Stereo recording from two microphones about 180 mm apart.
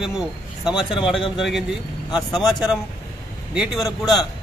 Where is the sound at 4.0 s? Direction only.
20° left (ahead or behind).